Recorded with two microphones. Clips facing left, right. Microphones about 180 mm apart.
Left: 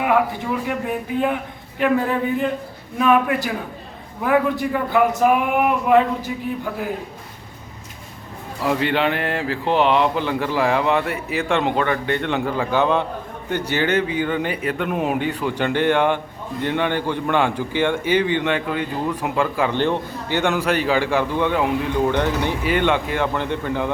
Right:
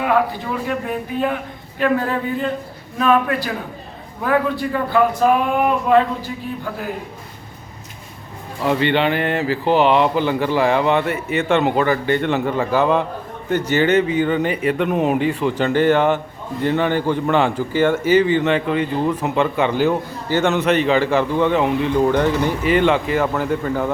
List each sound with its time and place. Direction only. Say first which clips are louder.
0.0 s speech: right 1 dB; 15° left (ahead or behind)
8.6 s a man's voice: right 2 dB; centre (ahead or behind)
21.2 s a man's voice: right 3 dB; 15° right (ahead or behind)
21.5 s a man's voice: right 3 dB; centre (ahead or behind)